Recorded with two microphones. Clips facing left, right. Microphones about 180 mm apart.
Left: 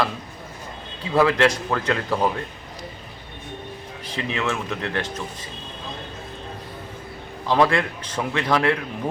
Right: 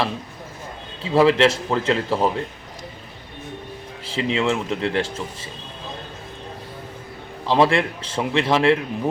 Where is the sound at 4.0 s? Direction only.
25° right (ahead or behind).